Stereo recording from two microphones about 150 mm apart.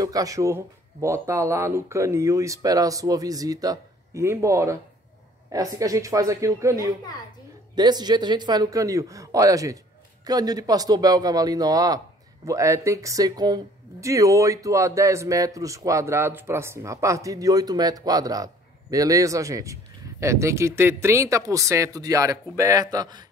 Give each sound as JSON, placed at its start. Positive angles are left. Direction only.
{"t": 0.0, "sound": "speech", "side_deg": -25}